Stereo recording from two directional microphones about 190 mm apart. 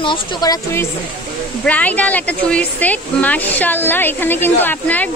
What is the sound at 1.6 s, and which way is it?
Speech, 10° left (ahead or behind).